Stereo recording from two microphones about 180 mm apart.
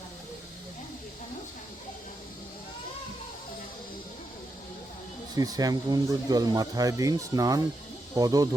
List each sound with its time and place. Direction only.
5.3 s speech: 20° right (ahead or behind)